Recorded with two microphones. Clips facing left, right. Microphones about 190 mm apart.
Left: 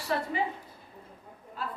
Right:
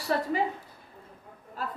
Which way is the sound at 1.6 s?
45° right (ahead or behind).